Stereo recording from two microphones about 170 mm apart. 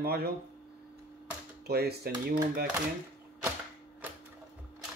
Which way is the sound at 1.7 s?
70° right (ahead or behind).